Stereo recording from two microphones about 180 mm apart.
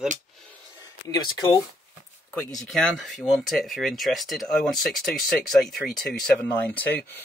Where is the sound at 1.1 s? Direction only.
20° left (ahead or behind).